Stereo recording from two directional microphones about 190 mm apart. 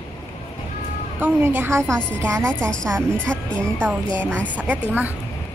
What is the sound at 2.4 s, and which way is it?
Speech, 5° left (ahead or behind).